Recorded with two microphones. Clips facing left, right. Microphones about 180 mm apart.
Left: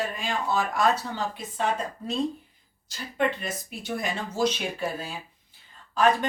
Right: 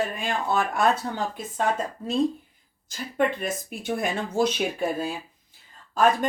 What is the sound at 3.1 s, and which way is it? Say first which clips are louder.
Speech: right 2 dB; 50° right (ahead or behind).